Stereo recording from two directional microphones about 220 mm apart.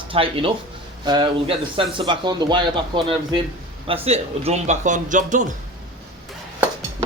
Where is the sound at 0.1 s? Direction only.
25° right (ahead or behind).